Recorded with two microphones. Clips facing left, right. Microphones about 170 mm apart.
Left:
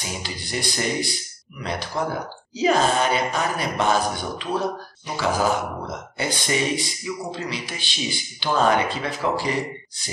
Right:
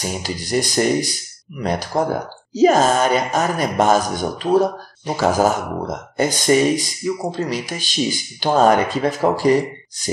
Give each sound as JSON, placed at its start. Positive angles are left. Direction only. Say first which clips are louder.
{"t": 0.0, "sound": "speech", "louder": "right 7 dB", "side_deg": -45}